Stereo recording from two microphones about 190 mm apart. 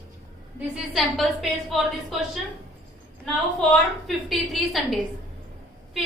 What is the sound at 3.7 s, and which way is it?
A woman's voice, centre (ahead or behind).